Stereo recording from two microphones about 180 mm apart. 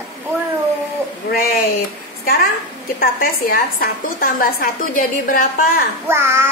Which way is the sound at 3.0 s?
55° left (ahead or behind).